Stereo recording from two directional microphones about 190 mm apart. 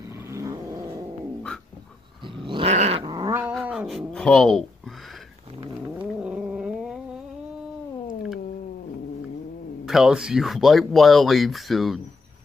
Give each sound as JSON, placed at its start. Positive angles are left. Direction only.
{"t": 0.1, "sound": "cat", "side_deg": -15}
{"t": 2.2, "sound": "growling", "side_deg": -25}
{"t": 3.1, "sound": "growling", "side_deg": -20}
{"t": 3.6, "sound": "a sound", "side_deg": 0}
{"t": 5.9, "sound": "a sound", "side_deg": -5}
{"t": 9.8, "sound": "speech", "side_deg": 0}